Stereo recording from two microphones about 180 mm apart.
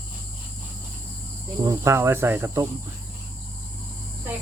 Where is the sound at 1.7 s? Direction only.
15° right (ahead or behind).